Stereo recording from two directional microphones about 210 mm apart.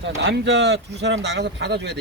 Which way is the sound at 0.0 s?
55° right (ahead or behind).